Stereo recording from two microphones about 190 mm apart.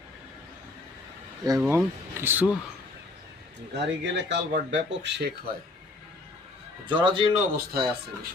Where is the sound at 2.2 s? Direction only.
10° right (ahead or behind).